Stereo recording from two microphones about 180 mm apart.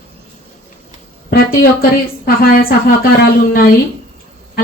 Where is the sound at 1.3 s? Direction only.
55° left (ahead or behind).